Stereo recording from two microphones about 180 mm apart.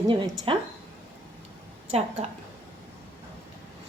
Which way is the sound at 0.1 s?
25° right (ahead or behind).